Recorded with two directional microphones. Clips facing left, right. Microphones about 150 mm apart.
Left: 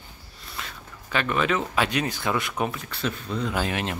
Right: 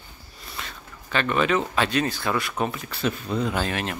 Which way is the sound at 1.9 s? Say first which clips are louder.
Right 2 dB; 15° left (ahead or behind).